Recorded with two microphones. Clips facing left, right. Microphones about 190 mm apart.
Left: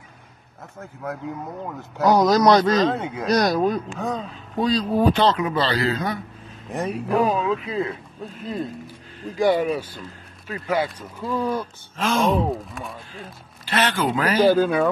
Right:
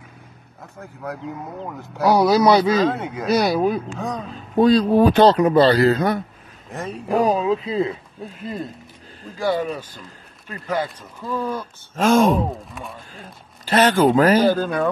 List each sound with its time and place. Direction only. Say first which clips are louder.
0.7 s speech: even; centre (ahead or behind)
4.6 s speech: right 6 dB; 55° right (ahead or behind)
5.1 s speech: right 7 dB; 40° right (ahead or behind)
6.7 s speech: left 3 dB; 15° left (ahead or behind)
7.2 s speech: right 3 dB; 35° right (ahead or behind)
9.4 s speech: left 3 dB; 10° left (ahead or behind)
12.0 s speech: right 5 dB; 45° right (ahead or behind)
13.7 s speech: right 7 dB; 40° right (ahead or behind)
14.4 s speech: left 2 dB; 10° left (ahead or behind)